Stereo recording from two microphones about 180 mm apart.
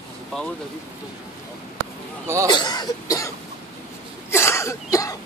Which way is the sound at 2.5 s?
25° left (ahead or behind).